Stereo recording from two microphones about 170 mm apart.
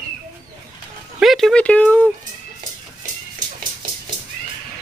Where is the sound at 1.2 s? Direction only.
Centre (ahead or behind).